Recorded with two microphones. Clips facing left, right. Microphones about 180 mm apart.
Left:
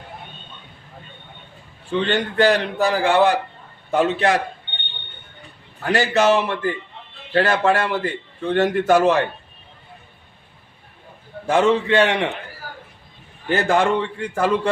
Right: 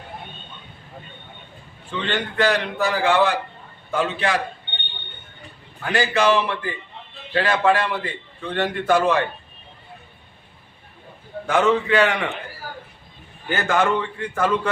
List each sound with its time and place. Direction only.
1.9 s a man's voice: 35° left (ahead or behind)
5.8 s a man's voice: 40° left (ahead or behind)
11.4 s a man's voice: 30° left (ahead or behind)
13.5 s a man's voice: 35° left (ahead or behind)